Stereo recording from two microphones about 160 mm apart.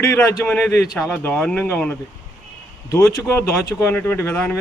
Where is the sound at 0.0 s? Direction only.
15° left (ahead or behind).